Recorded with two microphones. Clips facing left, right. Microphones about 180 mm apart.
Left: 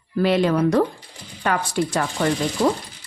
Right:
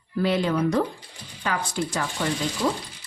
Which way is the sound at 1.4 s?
60° left (ahead or behind).